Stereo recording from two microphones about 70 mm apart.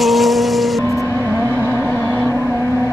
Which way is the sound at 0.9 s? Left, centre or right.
Left.